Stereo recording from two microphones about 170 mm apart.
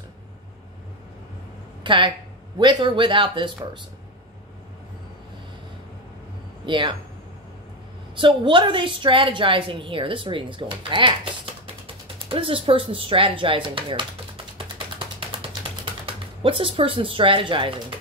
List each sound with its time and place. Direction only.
1.8 s a woman's voice: 30° right (ahead or behind)
6.6 s a woman's voice: 30° right (ahead or behind)
8.2 s a woman's voice: 30° right (ahead or behind)
12.2 s speech: 30° right (ahead or behind)
15.1 s typing: 30° right (ahead or behind)